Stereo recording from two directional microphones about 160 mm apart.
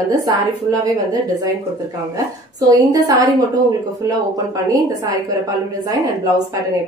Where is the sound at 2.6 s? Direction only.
25° right (ahead or behind).